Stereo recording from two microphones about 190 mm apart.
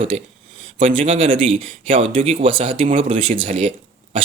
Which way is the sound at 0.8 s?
30° right (ahead or behind).